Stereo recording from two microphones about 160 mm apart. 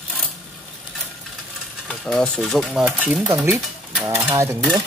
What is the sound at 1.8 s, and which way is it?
Speech, centre (ahead or behind).